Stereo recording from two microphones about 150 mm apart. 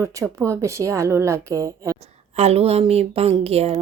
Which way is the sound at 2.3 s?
45° right (ahead or behind).